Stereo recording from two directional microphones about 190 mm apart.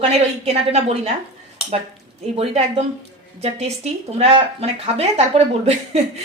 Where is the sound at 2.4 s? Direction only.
35° right (ahead or behind).